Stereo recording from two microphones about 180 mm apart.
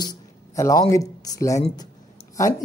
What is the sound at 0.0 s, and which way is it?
Speech, 20° left (ahead or behind).